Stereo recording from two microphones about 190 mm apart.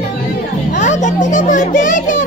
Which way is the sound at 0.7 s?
40° left (ahead or behind).